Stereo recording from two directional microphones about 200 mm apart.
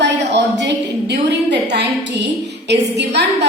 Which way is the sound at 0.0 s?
60° right (ahead or behind).